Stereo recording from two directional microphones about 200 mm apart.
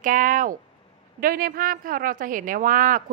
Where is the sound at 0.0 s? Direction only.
40° right (ahead or behind).